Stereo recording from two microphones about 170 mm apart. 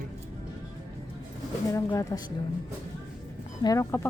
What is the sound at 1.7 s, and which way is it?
Speech, 15° left (ahead or behind).